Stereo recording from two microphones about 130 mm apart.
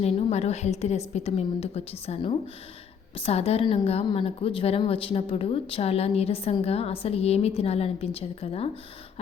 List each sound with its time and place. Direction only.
0.0 s a woman's voice: 55° left (ahead or behind)